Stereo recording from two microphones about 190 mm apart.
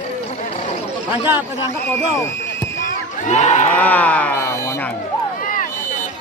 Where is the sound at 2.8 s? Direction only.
40° left (ahead or behind).